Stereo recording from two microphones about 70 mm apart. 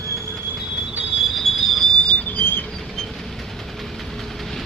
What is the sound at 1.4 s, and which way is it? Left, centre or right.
Train, centre.